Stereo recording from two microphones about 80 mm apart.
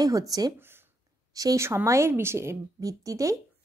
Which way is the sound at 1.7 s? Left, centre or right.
Right.